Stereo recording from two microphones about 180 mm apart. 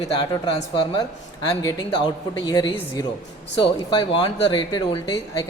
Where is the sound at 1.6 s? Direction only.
20° left (ahead or behind).